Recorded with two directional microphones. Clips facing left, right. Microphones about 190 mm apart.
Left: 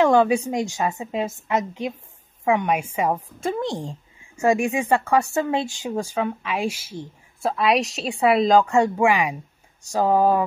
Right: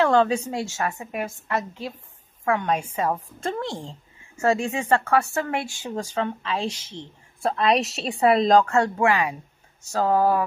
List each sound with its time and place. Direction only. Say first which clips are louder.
0.0 s speech: left 3 dB; 10° left (ahead or behind)